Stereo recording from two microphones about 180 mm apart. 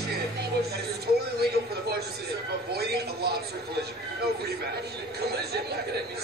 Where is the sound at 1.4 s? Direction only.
65° right (ahead or behind).